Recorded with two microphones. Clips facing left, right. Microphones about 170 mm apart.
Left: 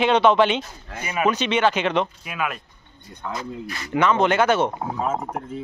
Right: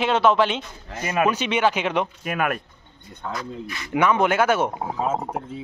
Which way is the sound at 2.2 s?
55° right (ahead or behind).